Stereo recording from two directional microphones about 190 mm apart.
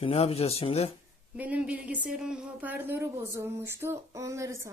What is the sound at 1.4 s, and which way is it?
Speech, 5° right (ahead or behind).